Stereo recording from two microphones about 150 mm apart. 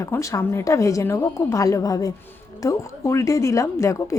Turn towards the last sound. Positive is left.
turn(degrees=20)  # may be behind; listen again after turning